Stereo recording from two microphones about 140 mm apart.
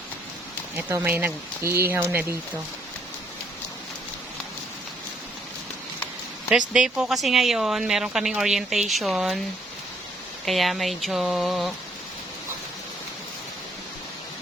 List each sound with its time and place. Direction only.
0.8 s speech: 15° right (ahead or behind)
6.7 s a woman's voice: 5° right (ahead or behind)
10.4 s a woman's voice: centre (ahead or behind)